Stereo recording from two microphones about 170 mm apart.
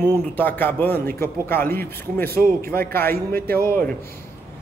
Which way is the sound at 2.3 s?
60° right (ahead or behind).